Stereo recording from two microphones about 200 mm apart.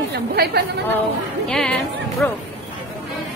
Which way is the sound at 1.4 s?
5° left (ahead or behind).